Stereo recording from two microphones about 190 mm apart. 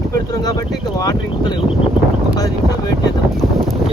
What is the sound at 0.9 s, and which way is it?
Speech, 20° left (ahead or behind).